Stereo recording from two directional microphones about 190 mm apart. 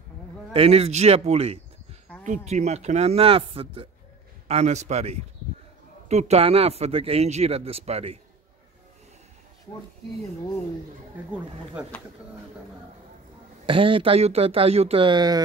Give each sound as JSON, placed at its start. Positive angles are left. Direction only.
{"t": 0.5, "sound": "speech", "side_deg": -30}
{"t": 13.7, "sound": "speech", "side_deg": -25}